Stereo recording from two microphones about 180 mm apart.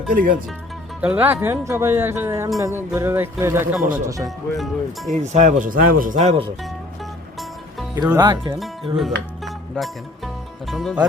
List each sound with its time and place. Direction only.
1.0 s speech: 10° right (ahead or behind)
4.5 s speech: centre (ahead or behind)
5.1 s speech: 40° right (ahead or behind)
6.6 s music: centre (ahead or behind)
8.1 s speech: 15° right (ahead or behind)
9.0 s speech: centre (ahead or behind)